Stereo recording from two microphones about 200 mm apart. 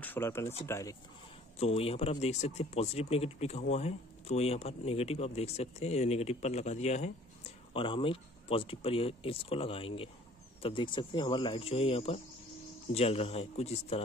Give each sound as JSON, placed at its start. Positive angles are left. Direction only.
{"t": 0.0, "sound": "speech", "side_deg": 10}
{"t": 1.6, "sound": "a man's voice", "side_deg": 30}